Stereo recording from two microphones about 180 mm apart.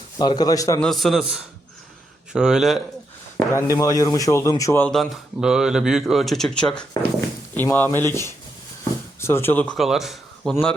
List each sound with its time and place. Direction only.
0.2 s a man's voice: 20° left (ahead or behind)
0.8 s speech: centre (ahead or behind)
3.3 s speech: 15° left (ahead or behind)
4.9 s speech: centre (ahead or behind)